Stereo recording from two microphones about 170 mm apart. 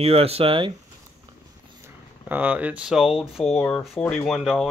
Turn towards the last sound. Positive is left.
turn(degrees=0)  # may be behind; listen again after turning